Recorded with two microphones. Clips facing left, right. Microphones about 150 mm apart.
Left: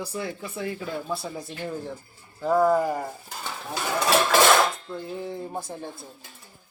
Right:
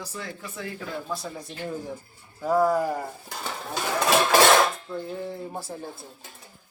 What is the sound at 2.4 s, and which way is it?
Speech, 10° right (ahead or behind).